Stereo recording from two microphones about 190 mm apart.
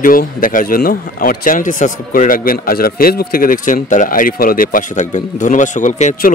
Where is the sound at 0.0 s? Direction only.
45° left (ahead or behind).